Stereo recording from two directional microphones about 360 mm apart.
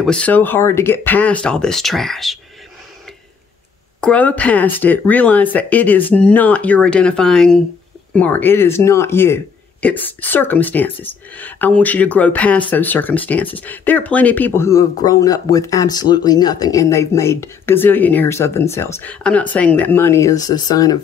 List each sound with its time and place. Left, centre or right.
0.0 s speech: centre
4.0 s speech: centre